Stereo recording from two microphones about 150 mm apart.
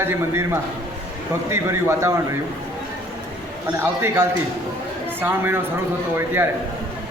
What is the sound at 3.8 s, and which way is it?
A man's voice, 15° right (ahead or behind).